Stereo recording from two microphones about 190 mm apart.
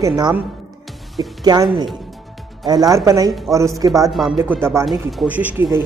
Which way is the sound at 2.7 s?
20° right (ahead or behind).